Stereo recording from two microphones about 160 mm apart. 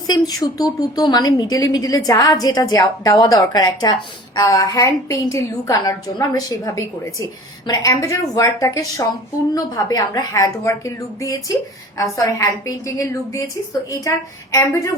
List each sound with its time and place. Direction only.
0.1 s speech: 25° left (ahead or behind)